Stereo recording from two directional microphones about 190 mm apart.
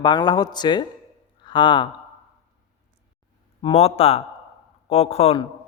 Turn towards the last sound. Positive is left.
turn(degrees=30)  # may be behind; listen again after turning